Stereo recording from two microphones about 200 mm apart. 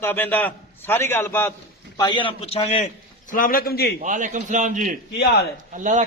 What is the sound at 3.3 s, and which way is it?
Speech, 45° left (ahead or behind).